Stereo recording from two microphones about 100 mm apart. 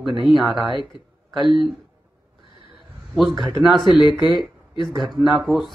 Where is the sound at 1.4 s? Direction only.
55° right (ahead or behind).